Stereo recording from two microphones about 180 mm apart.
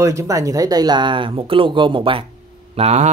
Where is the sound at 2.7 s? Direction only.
35° right (ahead or behind).